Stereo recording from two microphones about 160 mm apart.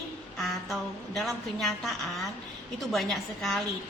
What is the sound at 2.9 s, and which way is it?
Speech, centre (ahead or behind).